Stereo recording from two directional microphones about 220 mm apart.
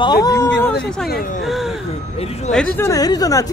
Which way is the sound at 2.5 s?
5° left (ahead or behind).